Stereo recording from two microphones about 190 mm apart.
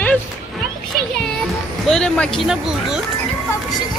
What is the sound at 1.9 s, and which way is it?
Speech, 5° left (ahead or behind).